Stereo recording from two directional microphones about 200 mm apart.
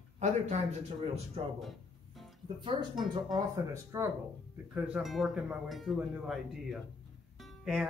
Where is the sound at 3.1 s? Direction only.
20° right (ahead or behind).